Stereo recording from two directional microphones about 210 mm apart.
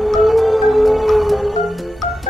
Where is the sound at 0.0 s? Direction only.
Centre (ahead or behind).